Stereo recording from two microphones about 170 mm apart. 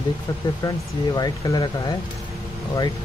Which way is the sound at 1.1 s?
25° left (ahead or behind).